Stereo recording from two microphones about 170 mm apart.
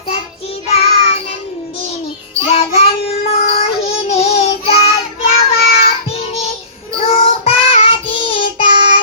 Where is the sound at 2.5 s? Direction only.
35° left (ahead or behind).